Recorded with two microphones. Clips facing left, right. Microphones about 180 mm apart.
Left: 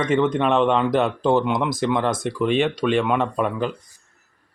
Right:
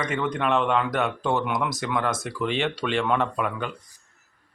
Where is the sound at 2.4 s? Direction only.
15° left (ahead or behind).